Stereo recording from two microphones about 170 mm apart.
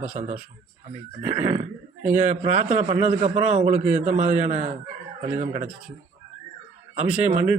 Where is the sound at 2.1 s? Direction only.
45° right (ahead or behind).